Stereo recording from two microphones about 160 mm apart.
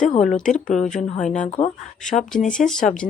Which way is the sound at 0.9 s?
50° left (ahead or behind).